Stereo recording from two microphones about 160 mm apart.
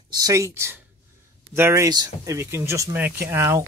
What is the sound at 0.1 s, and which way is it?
Speech, 20° right (ahead or behind).